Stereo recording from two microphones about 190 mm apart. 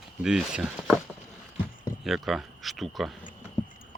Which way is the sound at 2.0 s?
Centre (ahead or behind).